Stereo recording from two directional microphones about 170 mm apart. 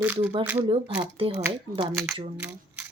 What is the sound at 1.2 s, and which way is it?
Speech, 30° right (ahead or behind).